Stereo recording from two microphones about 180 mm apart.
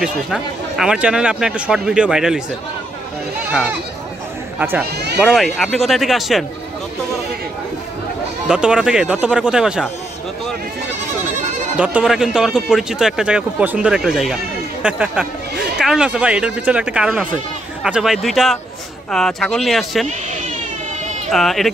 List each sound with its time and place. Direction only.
0.0 s speech: 5° right (ahead or behind)
4.6 s speech: 10° right (ahead or behind)
4.9 s a sound: 65° right (ahead or behind)
5.2 s speech: centre (ahead or behind)
8.5 s speech: 5° right (ahead or behind)
11.7 s speech: 5° right (ahead or behind)
21.3 s speech: centre (ahead or behind)